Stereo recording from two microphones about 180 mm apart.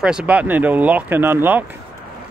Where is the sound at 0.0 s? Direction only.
5° right (ahead or behind).